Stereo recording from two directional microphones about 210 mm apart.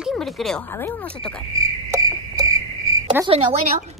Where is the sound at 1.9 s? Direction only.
15° right (ahead or behind).